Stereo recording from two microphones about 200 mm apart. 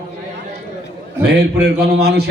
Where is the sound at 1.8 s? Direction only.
55° right (ahead or behind).